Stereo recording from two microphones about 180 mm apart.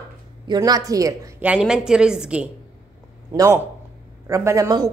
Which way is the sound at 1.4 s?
5° right (ahead or behind).